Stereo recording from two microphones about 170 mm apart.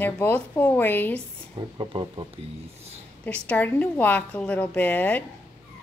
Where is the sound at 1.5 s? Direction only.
25° right (ahead or behind).